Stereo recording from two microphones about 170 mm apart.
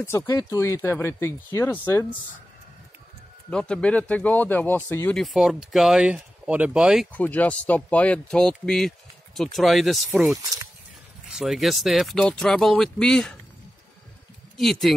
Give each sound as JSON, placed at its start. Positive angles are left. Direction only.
{"t": 0.0, "sound": "speech", "side_deg": 15}
{"t": 3.4, "sound": "speech", "side_deg": 5}
{"t": 5.1, "sound": "speech", "side_deg": 0}
{"t": 7.1, "sound": "speech", "side_deg": 10}
{"t": 10.4, "sound": "speech", "side_deg": -20}
{"t": 11.3, "sound": "speech", "side_deg": 0}
{"t": 14.6, "sound": "speech", "side_deg": 0}